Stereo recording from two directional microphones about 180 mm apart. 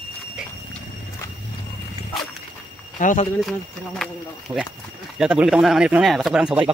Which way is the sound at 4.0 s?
Centre (ahead or behind).